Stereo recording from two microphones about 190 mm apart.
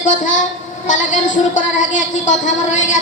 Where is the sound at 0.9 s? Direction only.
40° left (ahead or behind).